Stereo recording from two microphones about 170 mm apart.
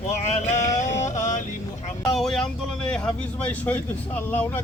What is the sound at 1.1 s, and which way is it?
Music, 45° left (ahead or behind).